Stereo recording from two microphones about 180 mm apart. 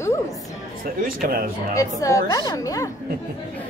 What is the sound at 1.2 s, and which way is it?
Speech, 55° right (ahead or behind).